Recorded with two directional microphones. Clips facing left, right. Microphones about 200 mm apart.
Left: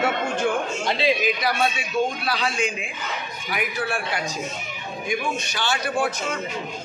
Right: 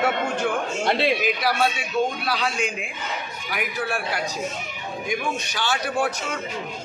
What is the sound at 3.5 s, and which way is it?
Speech, centre (ahead or behind).